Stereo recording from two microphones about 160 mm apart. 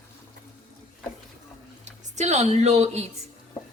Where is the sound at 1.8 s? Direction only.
45° right (ahead or behind).